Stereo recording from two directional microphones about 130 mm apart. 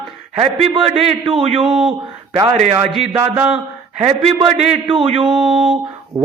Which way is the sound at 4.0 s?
50° right (ahead or behind).